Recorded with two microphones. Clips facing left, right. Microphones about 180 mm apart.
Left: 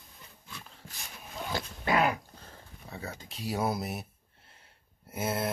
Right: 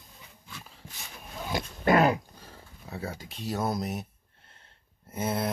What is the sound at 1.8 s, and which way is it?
Dog, 45° right (ahead or behind).